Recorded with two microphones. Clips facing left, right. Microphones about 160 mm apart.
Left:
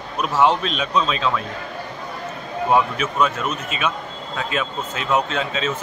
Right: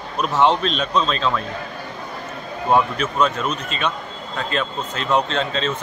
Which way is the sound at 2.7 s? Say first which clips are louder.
Right 1 dB; 5° left (ahead or behind).